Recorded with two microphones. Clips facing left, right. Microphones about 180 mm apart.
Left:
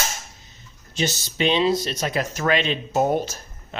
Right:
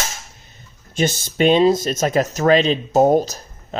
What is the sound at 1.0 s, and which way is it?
Speech, 50° right (ahead or behind).